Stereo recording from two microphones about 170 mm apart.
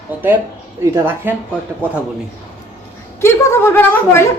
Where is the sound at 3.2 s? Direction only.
15° left (ahead or behind).